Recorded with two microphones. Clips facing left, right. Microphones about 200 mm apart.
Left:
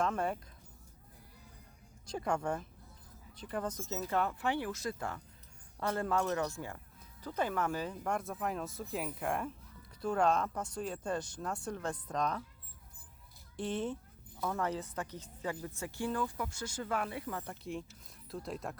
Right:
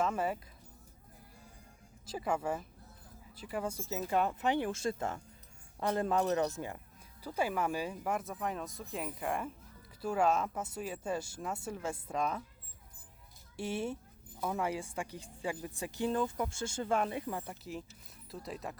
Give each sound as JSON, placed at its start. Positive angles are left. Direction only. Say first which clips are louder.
{"t": 0.0, "sound": "speech", "louder": "right 1 dB", "side_deg": -5}
{"t": 2.0, "sound": "speech", "louder": "even", "side_deg": -5}
{"t": 13.6, "sound": "speech", "louder": "even", "side_deg": -10}
{"t": 17.4, "sound": "speech", "louder": "left 2 dB", "side_deg": -5}